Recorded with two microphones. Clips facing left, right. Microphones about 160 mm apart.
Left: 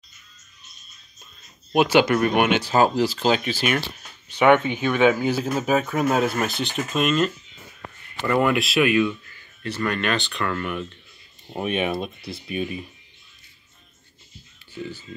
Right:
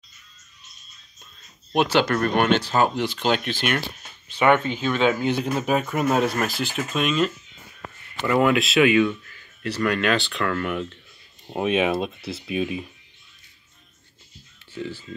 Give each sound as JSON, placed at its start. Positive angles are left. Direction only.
{"t": 1.7, "sound": "speech", "side_deg": 10}
{"t": 2.9, "sound": "speech", "side_deg": 35}
{"t": 3.3, "sound": "speech", "side_deg": 5}
{"t": 4.3, "sound": "speech", "side_deg": 15}
{"t": 11.6, "sound": "speech", "side_deg": -90}
{"t": 12.3, "sound": "speech", "side_deg": 0}